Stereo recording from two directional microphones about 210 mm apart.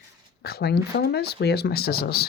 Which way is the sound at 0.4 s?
50° left (ahead or behind).